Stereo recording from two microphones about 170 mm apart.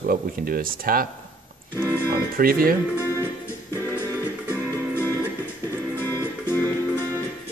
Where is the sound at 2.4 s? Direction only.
60° right (ahead or behind).